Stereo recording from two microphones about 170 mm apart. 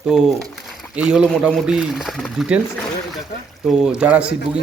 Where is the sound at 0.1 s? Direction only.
5° right (ahead or behind).